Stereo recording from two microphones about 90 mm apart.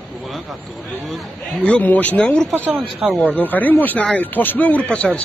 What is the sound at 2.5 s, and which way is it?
Speech, 25° right (ahead or behind).